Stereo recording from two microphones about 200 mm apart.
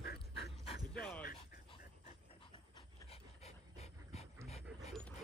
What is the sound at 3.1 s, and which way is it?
Dog, 30° left (ahead or behind).